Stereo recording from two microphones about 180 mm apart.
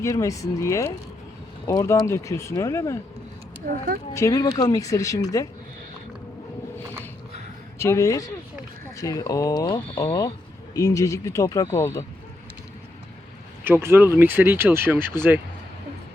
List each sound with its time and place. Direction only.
0.0 s speech: 15° left (ahead or behind)
4.1 s speech: 20° left (ahead or behind)
7.8 s speech: 15° left (ahead or behind)
13.7 s speech: 15° right (ahead or behind)